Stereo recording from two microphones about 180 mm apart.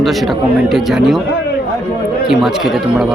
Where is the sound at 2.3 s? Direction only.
Centre (ahead or behind).